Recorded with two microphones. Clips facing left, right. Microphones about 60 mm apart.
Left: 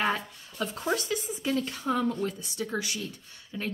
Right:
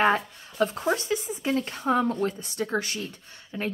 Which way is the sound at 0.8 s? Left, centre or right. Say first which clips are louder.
Right 3 dB; right.